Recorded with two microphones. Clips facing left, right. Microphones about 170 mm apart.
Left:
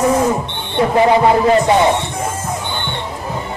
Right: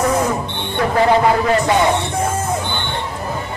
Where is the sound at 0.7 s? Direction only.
20° left (ahead or behind).